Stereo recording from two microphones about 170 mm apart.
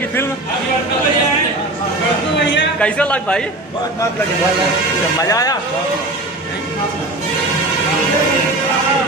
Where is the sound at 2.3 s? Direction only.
90° left.